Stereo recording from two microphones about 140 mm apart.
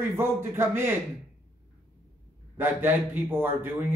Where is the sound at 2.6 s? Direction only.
15° right (ahead or behind).